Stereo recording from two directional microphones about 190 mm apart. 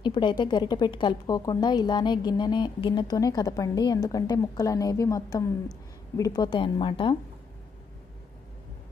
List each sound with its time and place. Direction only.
0.0 s a woman's voice: 25° left (ahead or behind)